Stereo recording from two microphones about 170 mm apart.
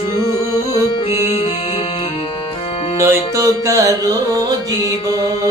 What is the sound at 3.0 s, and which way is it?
Music, 20° right (ahead or behind).